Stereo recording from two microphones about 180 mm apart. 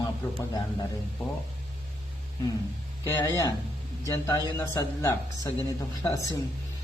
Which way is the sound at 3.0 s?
15° left (ahead or behind).